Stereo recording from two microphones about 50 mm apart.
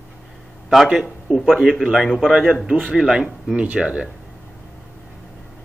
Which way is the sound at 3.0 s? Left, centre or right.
Centre.